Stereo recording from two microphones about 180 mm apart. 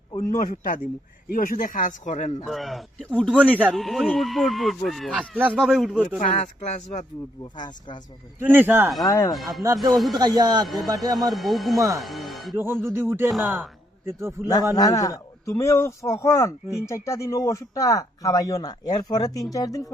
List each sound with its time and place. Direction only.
0.3 s speech: 45° left (ahead or behind)
2.4 s a man's voice: centre (ahead or behind)
6.1 s speech: 40° left (ahead or behind)
7.5 s speech: 25° left (ahead or behind)
8.4 s music: 10° right (ahead or behind)
9.0 s a man's voice: 15° left (ahead or behind)
9.3 s a man's voice: centre (ahead or behind)
10.2 s speech: 20° right (ahead or behind)
11.3 s a man's voice: centre (ahead or behind)
12.5 s music: 15° right (ahead or behind)
13.3 s a man's voice: centre (ahead or behind)
14.4 s a man's voice: 20° left (ahead or behind)